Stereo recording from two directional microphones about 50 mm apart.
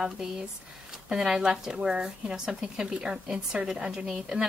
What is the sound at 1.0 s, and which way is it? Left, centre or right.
Speech, centre.